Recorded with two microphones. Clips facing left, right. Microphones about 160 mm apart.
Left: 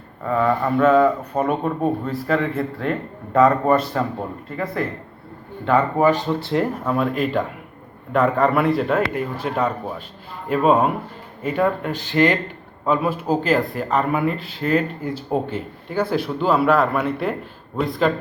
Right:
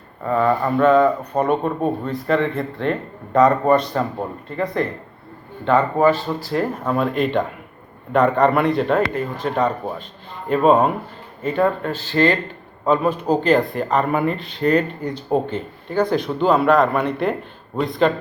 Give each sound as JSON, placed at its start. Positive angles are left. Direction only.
{"t": 0.3, "sound": "speech", "side_deg": -5}
{"t": 6.8, "sound": "speech", "side_deg": 0}